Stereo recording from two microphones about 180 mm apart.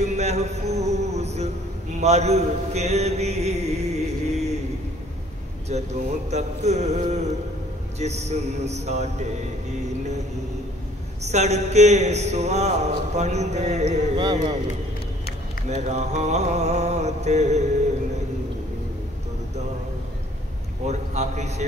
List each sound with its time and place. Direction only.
0.0 s a sound: 40° right (ahead or behind)
5.7 s mantra: 40° right (ahead or behind)
11.2 s mantra: 40° right (ahead or behind)
15.7 s mantra: 40° right (ahead or behind)
20.8 s mantra: 40° right (ahead or behind)